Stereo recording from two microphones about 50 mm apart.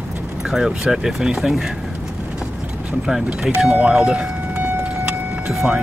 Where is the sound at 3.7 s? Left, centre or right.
Right.